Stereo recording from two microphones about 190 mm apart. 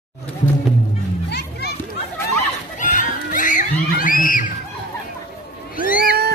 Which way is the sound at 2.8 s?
40° left (ahead or behind).